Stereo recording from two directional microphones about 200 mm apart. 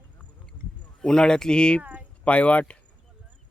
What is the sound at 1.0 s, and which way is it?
Speech, 5° left (ahead or behind).